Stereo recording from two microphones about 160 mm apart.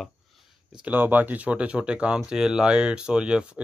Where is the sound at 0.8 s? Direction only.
10° right (ahead or behind).